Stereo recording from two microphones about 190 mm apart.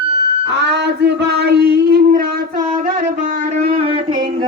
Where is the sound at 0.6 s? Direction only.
60° right (ahead or behind).